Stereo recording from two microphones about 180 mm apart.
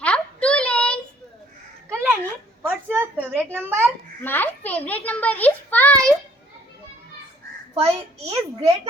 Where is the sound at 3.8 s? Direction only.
10° left (ahead or behind).